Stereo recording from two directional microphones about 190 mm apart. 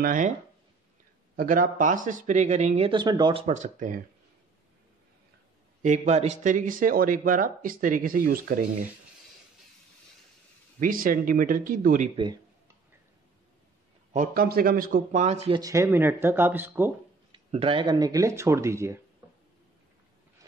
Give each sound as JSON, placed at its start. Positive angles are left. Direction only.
{"t": 0.0, "sound": "speech", "side_deg": -45}
{"t": 1.3, "sound": "speech", "side_deg": -50}
{"t": 5.8, "sound": "speech", "side_deg": -35}
{"t": 10.8, "sound": "speech", "side_deg": -45}
{"t": 14.1, "sound": "speech", "side_deg": -50}
{"t": 15.6, "sound": "speech", "side_deg": -15}
{"t": 17.3, "sound": "speech", "side_deg": -30}